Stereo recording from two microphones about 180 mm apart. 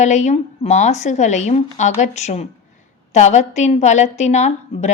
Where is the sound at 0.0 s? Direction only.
40° left (ahead or behind).